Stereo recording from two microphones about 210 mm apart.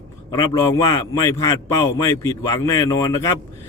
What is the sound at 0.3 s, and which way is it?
A man's voice, 15° left (ahead or behind).